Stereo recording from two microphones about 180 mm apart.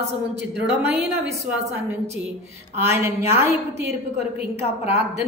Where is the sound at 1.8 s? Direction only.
15° right (ahead or behind).